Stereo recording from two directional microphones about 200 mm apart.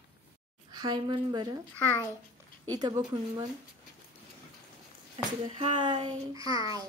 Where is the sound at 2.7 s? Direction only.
20° right (ahead or behind).